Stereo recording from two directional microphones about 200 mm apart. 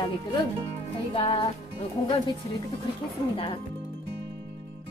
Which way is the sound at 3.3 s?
25° left (ahead or behind).